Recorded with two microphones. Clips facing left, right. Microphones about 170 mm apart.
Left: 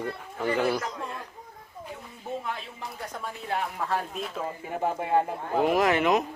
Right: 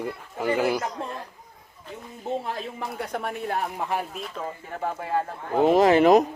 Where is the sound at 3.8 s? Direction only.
15° right (ahead or behind).